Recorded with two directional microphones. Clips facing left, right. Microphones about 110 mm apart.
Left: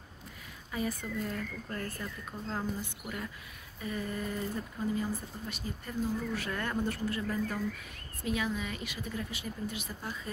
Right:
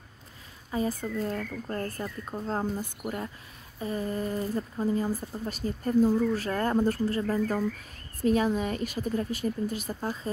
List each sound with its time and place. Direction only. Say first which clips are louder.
0.7 s speech: right 6 dB; 30° right (ahead or behind)